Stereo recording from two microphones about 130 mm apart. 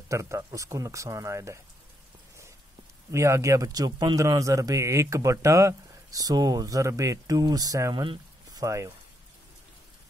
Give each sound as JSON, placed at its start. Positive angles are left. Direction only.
{"t": 0.1, "sound": "a man's voice", "side_deg": -25}
{"t": 3.1, "sound": "a man's voice", "side_deg": -20}
{"t": 8.6, "sound": "a man's voice", "side_deg": -25}